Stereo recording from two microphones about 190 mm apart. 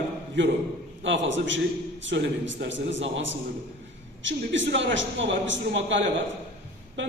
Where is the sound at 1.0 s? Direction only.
75° right (ahead or behind).